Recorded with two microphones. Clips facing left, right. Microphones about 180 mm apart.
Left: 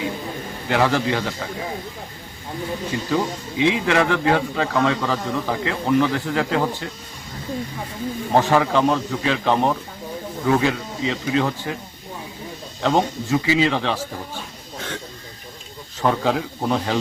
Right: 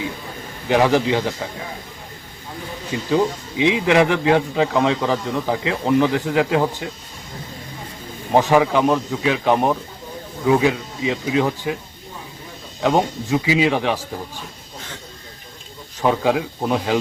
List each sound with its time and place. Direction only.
0.7 s a man's voice: 15° right (ahead or behind)
3.1 s a man's voice: 20° right (ahead or behind)
8.3 s a man's voice: 15° right (ahead or behind)
12.8 s a man's voice: 15° right (ahead or behind)
16.0 s a man's voice: 15° right (ahead or behind)